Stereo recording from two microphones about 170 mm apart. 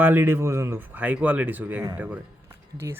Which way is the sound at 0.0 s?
10° right (ahead or behind).